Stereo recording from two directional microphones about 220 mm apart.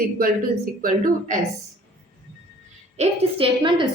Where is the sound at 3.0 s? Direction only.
25° right (ahead or behind).